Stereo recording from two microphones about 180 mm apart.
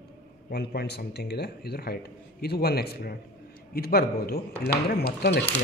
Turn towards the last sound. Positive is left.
turn(degrees=65)  # may be behind; listen again after turning